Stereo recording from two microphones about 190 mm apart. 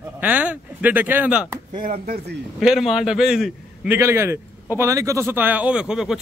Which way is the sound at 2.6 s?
Centre (ahead or behind).